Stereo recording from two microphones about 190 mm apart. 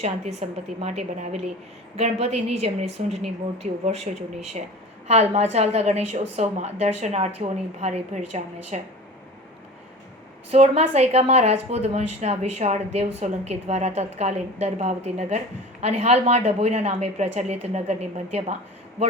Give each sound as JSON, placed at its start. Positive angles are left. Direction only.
{"t": 0.0, "sound": "a woman's voice", "side_deg": -35}
{"t": 10.5, "sound": "a woman's voice", "side_deg": -35}